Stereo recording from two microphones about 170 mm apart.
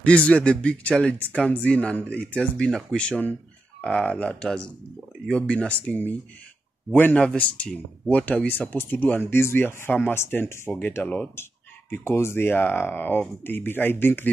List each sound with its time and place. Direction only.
0.0 s speech: 5° left (ahead or behind)